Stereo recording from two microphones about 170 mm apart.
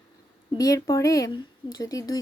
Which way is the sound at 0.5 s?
20° left (ahead or behind).